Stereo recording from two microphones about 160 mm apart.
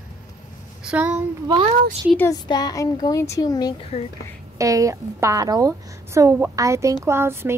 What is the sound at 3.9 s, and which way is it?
Speech, 40° left (ahead or behind).